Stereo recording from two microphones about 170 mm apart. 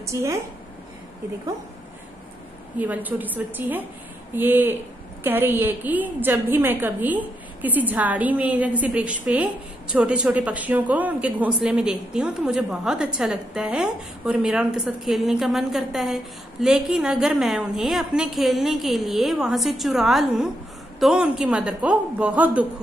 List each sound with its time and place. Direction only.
0.0 s a woman's voice: 15° right (ahead or behind)
2.9 s a woman's voice: 10° right (ahead or behind)